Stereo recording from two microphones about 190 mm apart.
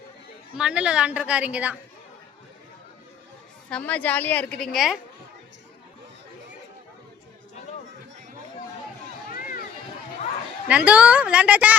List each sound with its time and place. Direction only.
0.5 s a woman's voice: 5° right (ahead or behind)
3.7 s a woman's voice: 5° left (ahead or behind)
9.3 s run: 45° left (ahead or behind)
10.7 s a woman's voice: 5° right (ahead or behind)